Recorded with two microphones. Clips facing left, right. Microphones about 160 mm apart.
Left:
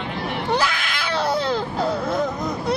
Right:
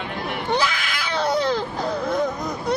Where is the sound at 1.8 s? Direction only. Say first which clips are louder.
Left 1 dB; 30° left (ahead or behind).